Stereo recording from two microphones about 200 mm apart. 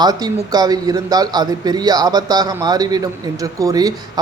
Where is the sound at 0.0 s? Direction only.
20° right (ahead or behind).